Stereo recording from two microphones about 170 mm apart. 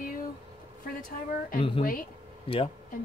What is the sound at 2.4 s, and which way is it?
Speech, 35° left (ahead or behind).